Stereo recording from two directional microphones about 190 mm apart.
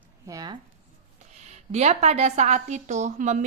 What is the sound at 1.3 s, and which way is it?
A woman's voice, 35° right (ahead or behind).